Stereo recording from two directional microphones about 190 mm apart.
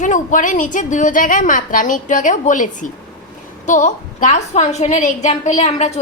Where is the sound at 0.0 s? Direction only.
40° left (ahead or behind).